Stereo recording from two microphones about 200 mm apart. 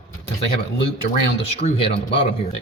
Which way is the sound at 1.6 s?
30° left (ahead or behind).